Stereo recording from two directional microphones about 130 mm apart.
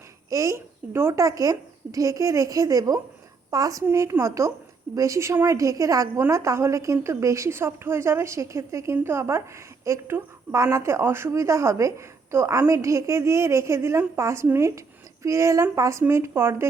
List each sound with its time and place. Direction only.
0.3 s a woman's voice: 25° right (ahead or behind)